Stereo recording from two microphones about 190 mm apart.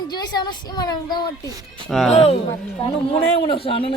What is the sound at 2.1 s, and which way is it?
A man's voice, 30° left (ahead or behind).